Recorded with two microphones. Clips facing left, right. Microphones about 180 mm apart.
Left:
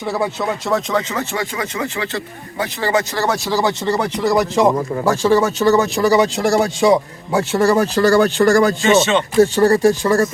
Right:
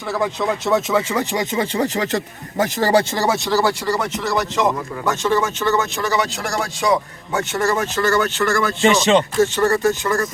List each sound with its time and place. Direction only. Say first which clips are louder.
0.7 s speech: right 2 dB; 5° right (ahead or behind)
1.5 s speech: right 3 dB; 35° right (ahead or behind)
3.5 s speech: left 1 dB; 20° left (ahead or behind)
7.3 s speech: left 5 dB; 35° left (ahead or behind)
8.8 s speech: even; 35° right (ahead or behind)
9.4 s speech: left 4 dB; 35° left (ahead or behind)